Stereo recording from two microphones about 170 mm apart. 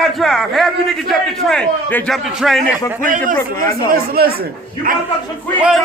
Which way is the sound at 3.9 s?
65° right (ahead or behind).